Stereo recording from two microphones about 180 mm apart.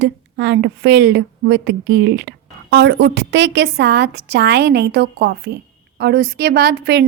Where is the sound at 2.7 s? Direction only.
85° right.